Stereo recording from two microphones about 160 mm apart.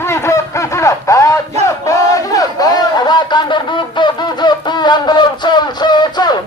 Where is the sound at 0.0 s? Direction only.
15° left (ahead or behind).